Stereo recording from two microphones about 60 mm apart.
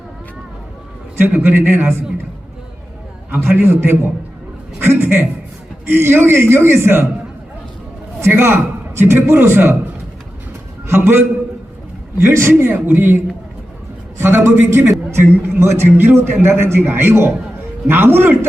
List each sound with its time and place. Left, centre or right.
1.4 s a man's voice: right
3.3 s a man's voice: right
8.2 s a man's voice: right
10.8 s a man's voice: right